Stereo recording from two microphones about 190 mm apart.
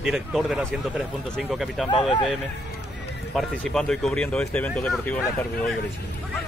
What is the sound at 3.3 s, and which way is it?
Speech, centre (ahead or behind).